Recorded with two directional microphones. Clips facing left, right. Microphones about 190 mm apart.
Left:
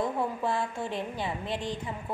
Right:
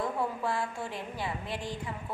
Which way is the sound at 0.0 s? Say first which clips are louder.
Left 2 dB; 20° left (ahead or behind).